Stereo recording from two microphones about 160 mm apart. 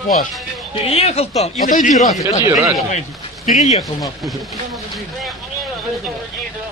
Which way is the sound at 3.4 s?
45° left (ahead or behind).